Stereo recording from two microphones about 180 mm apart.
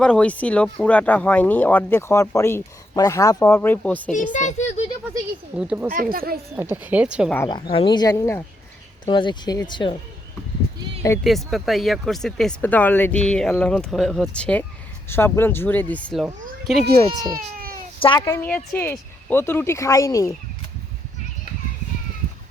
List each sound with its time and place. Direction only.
0.0 s speech: 5° left (ahead or behind)
4.1 s a sound: 45° left (ahead or behind)
5.5 s speech: 5° right (ahead or behind)
5.9 s speech: 50° right (ahead or behind)
6.9 s speech: 5° right (ahead or behind)
7.4 s speech: 30° left (ahead or behind)
9.0 s speech: 25° left (ahead or behind)
11.2 s speech: centre (ahead or behind)
17.3 s baby cry: 55° right (ahead or behind)
18.3 s speech: 10° left (ahead or behind)